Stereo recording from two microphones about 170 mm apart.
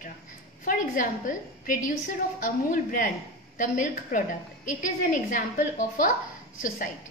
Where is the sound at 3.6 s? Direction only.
50° left (ahead or behind).